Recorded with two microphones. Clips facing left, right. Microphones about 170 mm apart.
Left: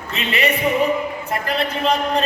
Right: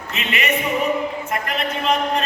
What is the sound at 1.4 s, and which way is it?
Speech, 35° left (ahead or behind).